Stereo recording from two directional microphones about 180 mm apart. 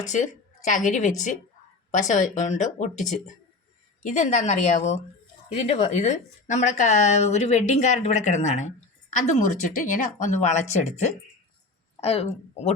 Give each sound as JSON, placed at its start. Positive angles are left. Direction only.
{"t": 0.1, "sound": "a woman's voice", "side_deg": 45}
{"t": 4.0, "sound": "a woman's voice", "side_deg": 40}